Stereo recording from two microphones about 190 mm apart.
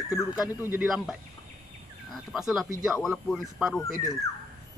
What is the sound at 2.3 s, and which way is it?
Speech, centre (ahead or behind).